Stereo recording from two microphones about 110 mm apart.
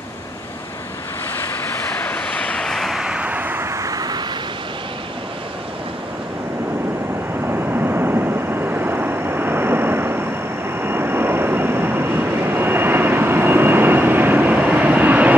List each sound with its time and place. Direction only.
2.0 s vehicle: 10° left (ahead or behind); by 4.2 s 35° right (ahead or behind)
7.4 s vehicle: 20° right (ahead or behind)